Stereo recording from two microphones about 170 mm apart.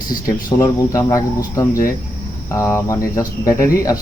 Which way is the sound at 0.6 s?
20° left (ahead or behind).